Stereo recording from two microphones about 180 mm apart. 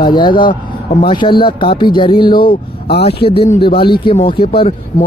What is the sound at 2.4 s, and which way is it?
Speech, 60° left (ahead or behind).